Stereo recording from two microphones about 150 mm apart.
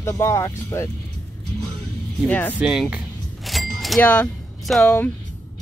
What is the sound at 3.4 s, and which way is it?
Vehicle, centre (ahead or behind).